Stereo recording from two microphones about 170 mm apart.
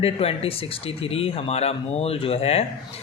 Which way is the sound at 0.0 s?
35° left (ahead or behind).